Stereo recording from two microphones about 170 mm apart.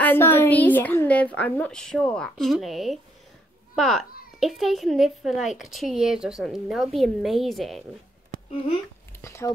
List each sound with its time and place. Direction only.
0.0 s a woman's voice: 10° left (ahead or behind)
8.3 s a sound: 55° right (ahead or behind)
9.2 s speech: 15° left (ahead or behind)